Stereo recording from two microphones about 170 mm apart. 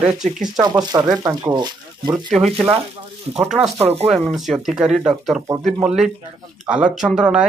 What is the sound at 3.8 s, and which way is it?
Speech, 35° right (ahead or behind).